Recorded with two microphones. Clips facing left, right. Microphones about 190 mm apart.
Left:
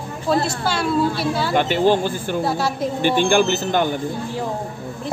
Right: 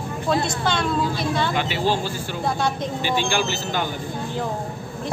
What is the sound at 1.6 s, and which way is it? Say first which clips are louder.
Speech: left 6 dB; 50° left (ahead or behind).